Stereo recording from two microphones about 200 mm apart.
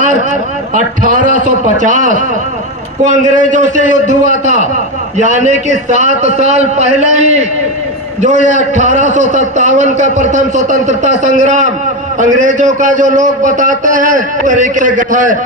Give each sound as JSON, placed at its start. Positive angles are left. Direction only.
{"t": 0.7, "sound": "a man's voice", "side_deg": -45}